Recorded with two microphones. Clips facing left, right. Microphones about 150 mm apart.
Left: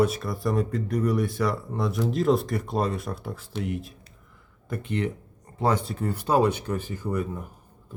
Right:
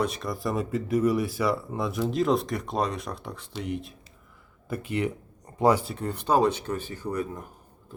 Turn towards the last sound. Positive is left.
turn(degrees=10)  # may be behind; listen again after turning